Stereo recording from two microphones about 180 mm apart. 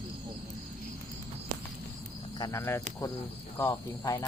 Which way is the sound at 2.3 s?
20° left (ahead or behind).